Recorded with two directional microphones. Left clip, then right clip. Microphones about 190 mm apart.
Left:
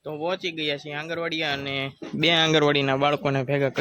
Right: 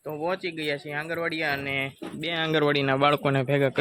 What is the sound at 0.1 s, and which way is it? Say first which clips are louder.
A man's voice: left 1 dB; 5° left (ahead or behind).